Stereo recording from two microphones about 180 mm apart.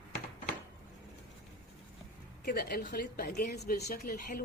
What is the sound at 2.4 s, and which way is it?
Speech, 60° left (ahead or behind).